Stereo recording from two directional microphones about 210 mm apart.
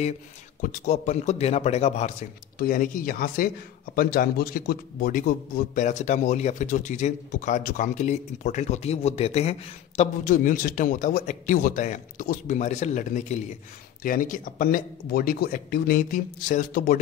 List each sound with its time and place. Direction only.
0.6 s a man's voice: 40° left (ahead or behind)